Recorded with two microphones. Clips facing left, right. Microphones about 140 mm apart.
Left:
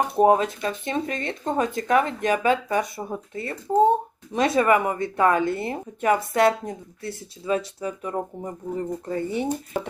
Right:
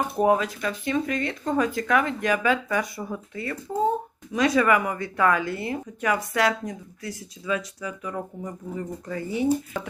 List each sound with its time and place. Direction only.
0.2 s speech: 25° left (ahead or behind)